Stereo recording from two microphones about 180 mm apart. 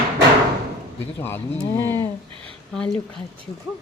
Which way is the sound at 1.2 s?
10° left (ahead or behind).